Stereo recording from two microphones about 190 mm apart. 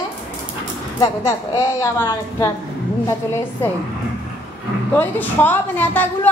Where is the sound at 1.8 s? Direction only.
15° left (ahead or behind).